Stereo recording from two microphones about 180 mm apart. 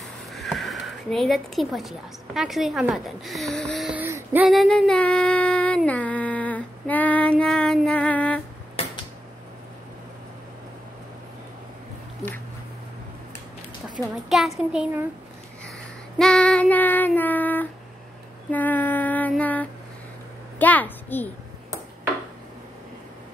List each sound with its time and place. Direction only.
0.3 s speech: centre (ahead or behind)
4.5 s female singing: centre (ahead or behind)
8.8 s a sound: 35° left (ahead or behind)
14.3 s speech: 5° right (ahead or behind)
16.2 s child singing: 5° left (ahead or behind)
18.5 s female singing: 10° left (ahead or behind)
20.5 s a sound: 10° left (ahead or behind)